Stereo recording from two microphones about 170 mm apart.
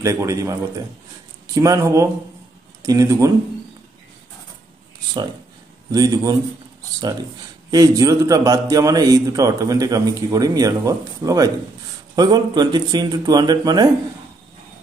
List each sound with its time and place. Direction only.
0.0 s a man's voice: 15° right (ahead or behind)
5.9 s a man's voice: 20° right (ahead or behind)
7.7 s a man's voice: 20° right (ahead or behind)